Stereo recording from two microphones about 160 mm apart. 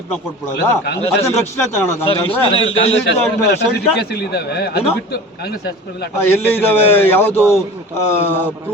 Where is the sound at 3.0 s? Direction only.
90° left.